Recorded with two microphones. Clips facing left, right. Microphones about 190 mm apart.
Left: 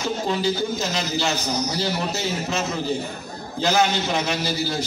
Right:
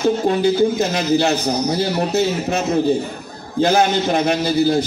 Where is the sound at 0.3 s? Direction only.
55° right (ahead or behind).